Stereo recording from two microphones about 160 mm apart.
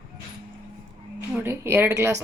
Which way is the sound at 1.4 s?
15° right (ahead or behind).